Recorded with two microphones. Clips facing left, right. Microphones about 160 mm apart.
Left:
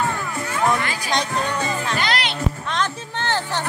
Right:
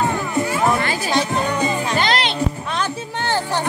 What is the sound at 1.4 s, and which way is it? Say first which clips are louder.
Music: right 4 dB; 10° right (ahead or behind).